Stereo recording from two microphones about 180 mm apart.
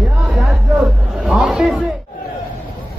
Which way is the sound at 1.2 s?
Centre (ahead or behind).